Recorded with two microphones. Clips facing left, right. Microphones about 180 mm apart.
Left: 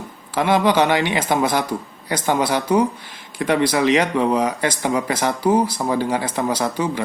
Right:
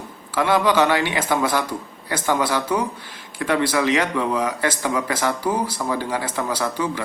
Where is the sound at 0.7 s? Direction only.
20° left (ahead or behind).